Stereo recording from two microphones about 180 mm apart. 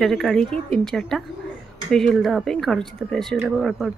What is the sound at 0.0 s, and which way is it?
Speech, centre (ahead or behind).